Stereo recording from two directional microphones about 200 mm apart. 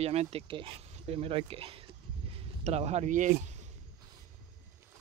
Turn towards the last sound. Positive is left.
turn(degrees=-35)  # may be behind; listen again after turning